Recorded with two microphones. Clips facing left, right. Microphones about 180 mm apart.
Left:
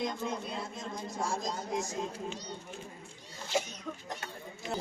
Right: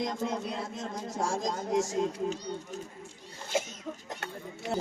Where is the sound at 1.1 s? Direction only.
90° right.